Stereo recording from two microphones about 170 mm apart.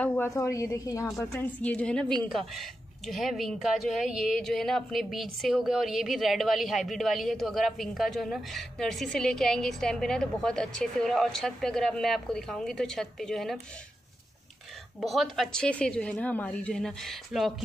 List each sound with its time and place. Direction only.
0.0 s a woman's voice: 10° left (ahead or behind)
1.1 s a woman's voice: 5° left (ahead or behind)
15.0 s speech: centre (ahead or behind)